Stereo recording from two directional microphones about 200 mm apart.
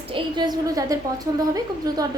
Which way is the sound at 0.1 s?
20° right (ahead or behind).